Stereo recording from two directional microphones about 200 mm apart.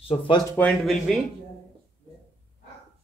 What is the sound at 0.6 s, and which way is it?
Speech, 5° left (ahead or behind).